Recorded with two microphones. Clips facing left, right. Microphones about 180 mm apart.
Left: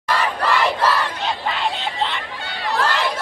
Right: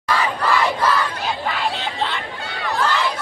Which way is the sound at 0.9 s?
Centre (ahead or behind).